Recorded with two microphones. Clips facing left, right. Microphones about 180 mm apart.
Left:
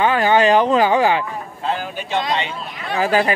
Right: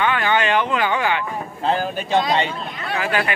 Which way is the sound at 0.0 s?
35° left (ahead or behind).